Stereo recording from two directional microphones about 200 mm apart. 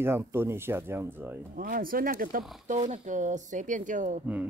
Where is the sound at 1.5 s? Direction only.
45° right (ahead or behind).